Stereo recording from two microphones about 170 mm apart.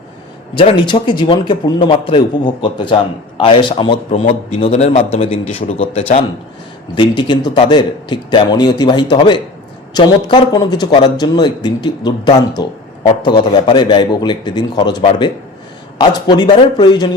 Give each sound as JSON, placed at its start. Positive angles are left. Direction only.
{"t": 0.5, "sound": "a man's voice", "side_deg": 30}